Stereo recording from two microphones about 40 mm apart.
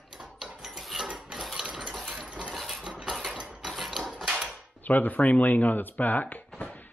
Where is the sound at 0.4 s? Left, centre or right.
Centre.